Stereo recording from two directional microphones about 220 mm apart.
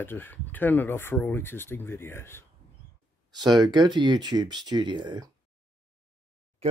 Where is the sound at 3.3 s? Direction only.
20° right (ahead or behind).